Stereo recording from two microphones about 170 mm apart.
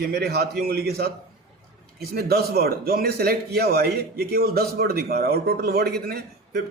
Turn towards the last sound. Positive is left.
turn(degrees=-70)  # may be behind; listen again after turning